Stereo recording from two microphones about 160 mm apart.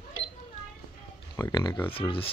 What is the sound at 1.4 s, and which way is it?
Speech, 25° left (ahead or behind).